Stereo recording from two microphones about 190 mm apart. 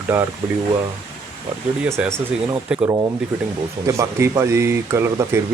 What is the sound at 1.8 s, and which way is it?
Speech, 10° right (ahead or behind).